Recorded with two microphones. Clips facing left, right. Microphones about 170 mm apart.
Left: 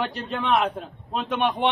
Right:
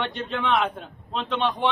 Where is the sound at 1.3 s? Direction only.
50° left (ahead or behind).